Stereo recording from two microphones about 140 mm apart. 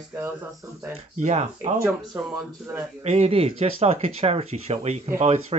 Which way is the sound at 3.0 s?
50° right (ahead or behind).